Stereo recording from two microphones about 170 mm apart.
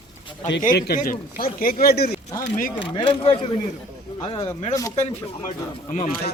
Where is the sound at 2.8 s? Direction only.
30° left (ahead or behind).